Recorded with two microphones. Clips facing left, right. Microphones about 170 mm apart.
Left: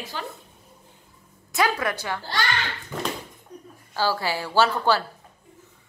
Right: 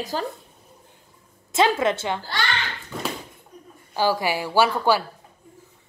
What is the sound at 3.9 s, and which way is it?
A woman's voice, 15° right (ahead or behind).